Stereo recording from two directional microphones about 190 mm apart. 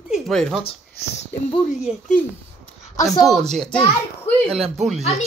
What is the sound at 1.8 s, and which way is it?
Speech, 5° right (ahead or behind).